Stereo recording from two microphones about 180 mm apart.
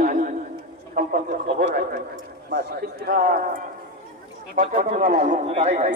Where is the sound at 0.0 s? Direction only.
50° right (ahead or behind).